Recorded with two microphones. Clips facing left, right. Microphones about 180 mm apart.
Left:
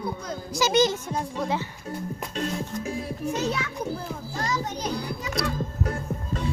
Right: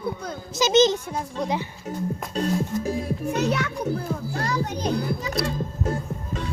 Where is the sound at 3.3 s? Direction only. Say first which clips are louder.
Right 5 dB; 65° right (ahead or behind).